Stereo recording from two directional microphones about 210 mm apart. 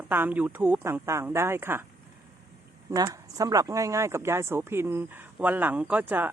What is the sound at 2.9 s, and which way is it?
Speech, 15° right (ahead or behind).